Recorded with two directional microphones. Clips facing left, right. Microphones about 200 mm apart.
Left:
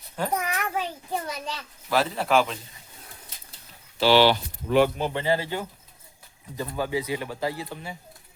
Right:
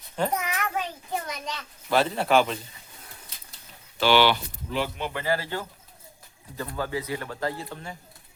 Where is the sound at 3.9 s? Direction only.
35° left (ahead or behind).